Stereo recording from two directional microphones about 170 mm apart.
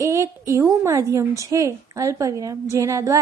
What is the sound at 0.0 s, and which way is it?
A woman's voice, 20° right (ahead or behind).